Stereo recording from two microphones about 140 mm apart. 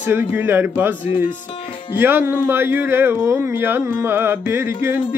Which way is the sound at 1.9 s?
15° right (ahead or behind).